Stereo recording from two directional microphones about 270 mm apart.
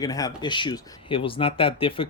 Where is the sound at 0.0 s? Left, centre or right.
Centre.